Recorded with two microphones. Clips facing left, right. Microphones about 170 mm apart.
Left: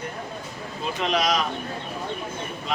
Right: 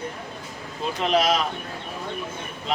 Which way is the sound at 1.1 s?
30° right (ahead or behind).